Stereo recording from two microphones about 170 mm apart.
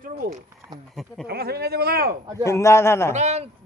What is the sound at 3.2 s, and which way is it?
Speech, 40° right (ahead or behind).